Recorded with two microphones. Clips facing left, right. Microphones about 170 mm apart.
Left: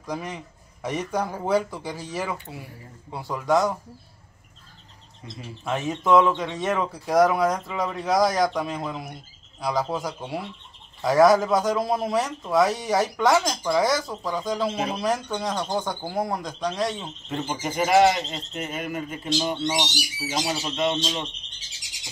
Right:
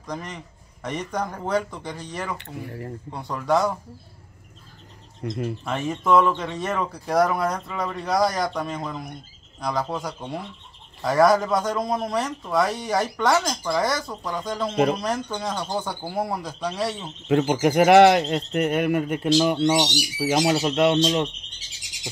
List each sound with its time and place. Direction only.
0.0 s speech: 10° left (ahead or behind)
2.3 s speech: 65° right (ahead or behind)
3.1 s speech: 5° left (ahead or behind)
5.3 s speech: 55° right (ahead or behind)
5.7 s speech: centre (ahead or behind)
17.3 s speech: 75° right (ahead or behind)